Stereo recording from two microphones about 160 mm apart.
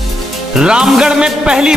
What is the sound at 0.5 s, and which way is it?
Speech, 5° right (ahead or behind).